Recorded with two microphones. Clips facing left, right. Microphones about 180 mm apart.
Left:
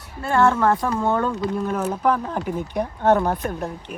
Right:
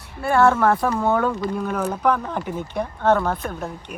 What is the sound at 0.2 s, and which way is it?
Speech, 10° right (ahead or behind).